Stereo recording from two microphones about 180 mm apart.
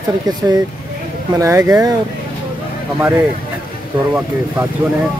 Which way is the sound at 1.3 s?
15° right (ahead or behind).